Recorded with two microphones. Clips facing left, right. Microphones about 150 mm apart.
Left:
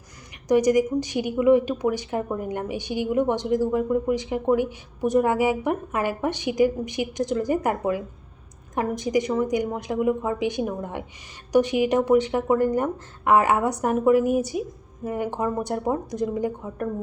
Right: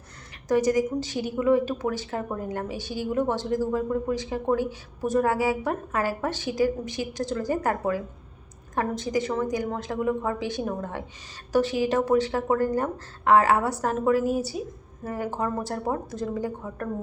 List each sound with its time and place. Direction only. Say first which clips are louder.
0.4 s speech: left 3 dB; 15° left (ahead or behind)